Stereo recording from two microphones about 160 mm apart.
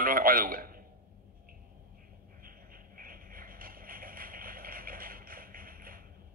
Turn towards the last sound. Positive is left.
turn(degrees=-65)  # may be behind; listen again after turning